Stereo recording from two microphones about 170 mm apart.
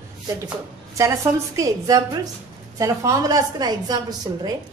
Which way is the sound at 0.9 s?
20° right (ahead or behind).